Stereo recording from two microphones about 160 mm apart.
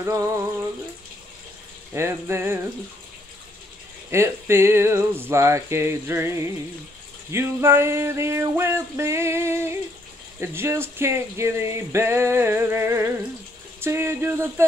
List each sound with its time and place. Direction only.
0.0 s speech: 15° right (ahead or behind)
2.0 s speech: 15° right (ahead or behind)
4.1 s speech: 15° right (ahead or behind)